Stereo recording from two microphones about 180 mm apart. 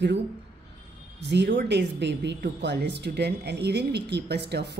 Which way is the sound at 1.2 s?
75° right (ahead or behind).